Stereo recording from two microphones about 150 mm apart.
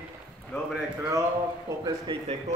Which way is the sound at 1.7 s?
25° right (ahead or behind).